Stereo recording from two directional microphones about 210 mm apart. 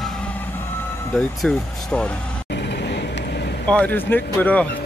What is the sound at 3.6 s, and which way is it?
Speech, 5° left (ahead or behind).